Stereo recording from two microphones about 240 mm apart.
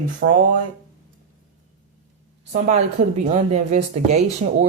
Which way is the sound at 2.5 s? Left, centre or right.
Right.